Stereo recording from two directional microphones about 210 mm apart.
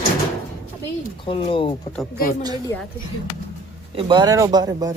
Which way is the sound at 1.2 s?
25° left (ahead or behind).